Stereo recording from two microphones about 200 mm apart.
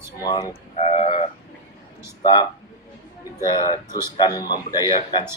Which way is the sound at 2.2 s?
20° left (ahead or behind).